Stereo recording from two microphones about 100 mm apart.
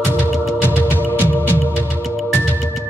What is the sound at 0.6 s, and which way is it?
Music, 20° right (ahead or behind).